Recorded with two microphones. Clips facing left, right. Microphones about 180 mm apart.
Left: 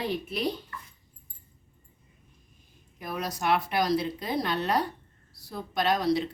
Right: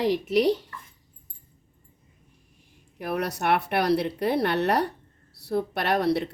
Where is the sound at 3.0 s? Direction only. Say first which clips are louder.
Right 5 dB; 65° right (ahead or behind).